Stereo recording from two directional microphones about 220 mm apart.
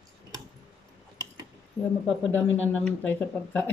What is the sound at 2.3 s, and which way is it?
Speech, 5° left (ahead or behind).